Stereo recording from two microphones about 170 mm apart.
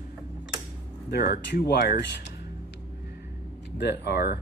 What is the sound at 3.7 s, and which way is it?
Speech, 85° left.